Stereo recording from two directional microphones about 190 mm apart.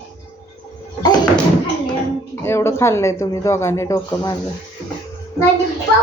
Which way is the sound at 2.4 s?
15° left (ahead or behind).